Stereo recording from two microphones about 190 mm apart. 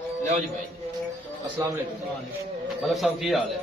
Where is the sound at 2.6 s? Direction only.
Centre (ahead or behind).